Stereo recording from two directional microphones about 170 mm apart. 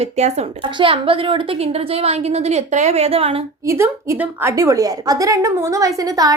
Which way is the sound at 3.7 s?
15° right (ahead or behind).